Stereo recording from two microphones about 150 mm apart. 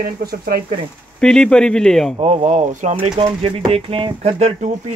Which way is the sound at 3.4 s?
40° right (ahead or behind).